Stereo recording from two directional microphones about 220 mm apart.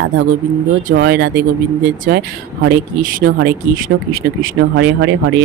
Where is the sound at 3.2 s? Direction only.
45° right (ahead or behind).